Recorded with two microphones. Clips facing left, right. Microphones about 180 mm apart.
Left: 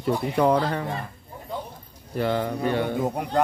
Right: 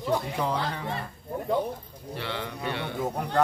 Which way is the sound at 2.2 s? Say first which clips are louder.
Left 10 dB; 45° left (ahead or behind).